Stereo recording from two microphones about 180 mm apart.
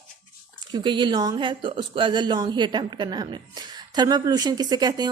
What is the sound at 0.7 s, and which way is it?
Speech, 25° right (ahead or behind).